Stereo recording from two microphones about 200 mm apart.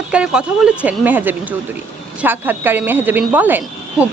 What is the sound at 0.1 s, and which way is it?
Speech, 5° right (ahead or behind).